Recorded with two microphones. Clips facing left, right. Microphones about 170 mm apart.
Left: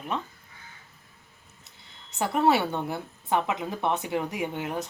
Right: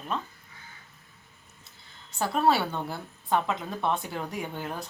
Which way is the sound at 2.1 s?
20° left (ahead or behind).